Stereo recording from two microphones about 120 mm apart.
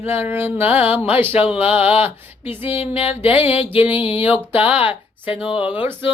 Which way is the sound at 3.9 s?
50° left (ahead or behind).